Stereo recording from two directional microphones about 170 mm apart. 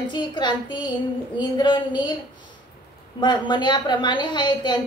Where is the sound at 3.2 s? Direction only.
25° left (ahead or behind).